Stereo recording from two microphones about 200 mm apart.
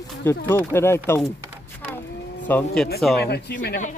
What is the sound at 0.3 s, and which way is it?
Speech, 10° left (ahead or behind).